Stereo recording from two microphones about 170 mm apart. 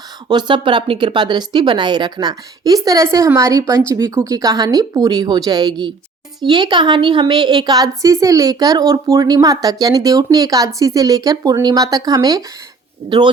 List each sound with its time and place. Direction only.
0.3 s a woman's voice: 25° right (ahead or behind)